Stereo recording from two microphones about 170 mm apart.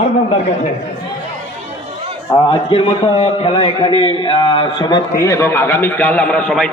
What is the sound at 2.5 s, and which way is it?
A man's voice, 35° left (ahead or behind).